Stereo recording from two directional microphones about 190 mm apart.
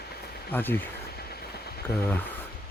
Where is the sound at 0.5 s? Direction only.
10° left (ahead or behind).